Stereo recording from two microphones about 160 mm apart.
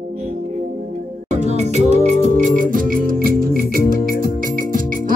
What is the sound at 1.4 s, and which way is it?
Music, 45° right (ahead or behind).